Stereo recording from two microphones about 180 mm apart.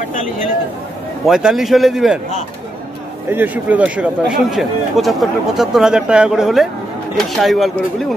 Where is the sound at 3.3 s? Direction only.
10° right (ahead or behind).